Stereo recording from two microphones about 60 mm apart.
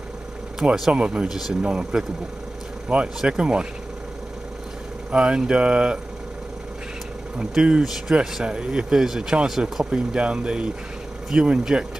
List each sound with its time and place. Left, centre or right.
0.6 s speech: centre
3.2 s speech: centre
5.1 s speech: centre
7.3 s speech: centre